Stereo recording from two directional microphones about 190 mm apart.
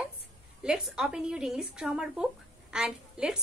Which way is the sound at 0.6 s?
5° right (ahead or behind).